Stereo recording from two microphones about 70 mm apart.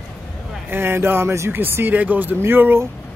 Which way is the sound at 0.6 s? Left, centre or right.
Right.